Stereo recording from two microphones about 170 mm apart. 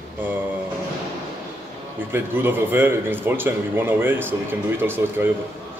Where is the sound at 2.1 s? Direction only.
15° right (ahead or behind).